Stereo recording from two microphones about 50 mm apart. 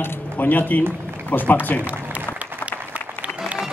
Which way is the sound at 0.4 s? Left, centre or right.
Left.